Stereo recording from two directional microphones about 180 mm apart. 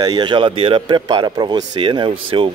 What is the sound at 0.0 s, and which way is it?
Speech, 25° right (ahead or behind).